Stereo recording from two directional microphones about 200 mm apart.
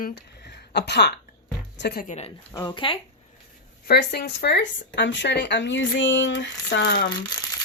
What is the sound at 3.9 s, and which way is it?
Speech, 55° left (ahead or behind).